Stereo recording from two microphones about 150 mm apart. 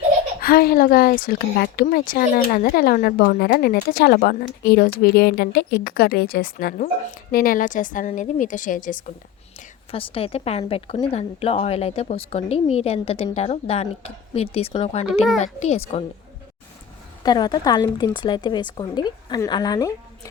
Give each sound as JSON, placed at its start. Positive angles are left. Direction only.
{"t": 0.4, "sound": "speech", "side_deg": 75}
{"t": 7.3, "sound": "a woman's voice", "side_deg": 75}
{"t": 9.9, "sound": "a woman's voice", "side_deg": 40}
{"t": 17.2, "sound": "a woman's voice", "side_deg": 30}